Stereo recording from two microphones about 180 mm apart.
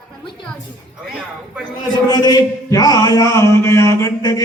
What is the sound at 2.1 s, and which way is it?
A man's voice, 20° left (ahead or behind).